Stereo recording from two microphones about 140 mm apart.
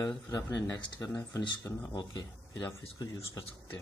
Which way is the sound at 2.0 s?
30° left (ahead or behind).